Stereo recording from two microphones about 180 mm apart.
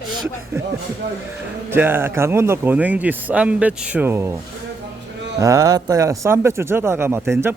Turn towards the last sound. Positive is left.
turn(degrees=-15)  # may be behind; listen again after turning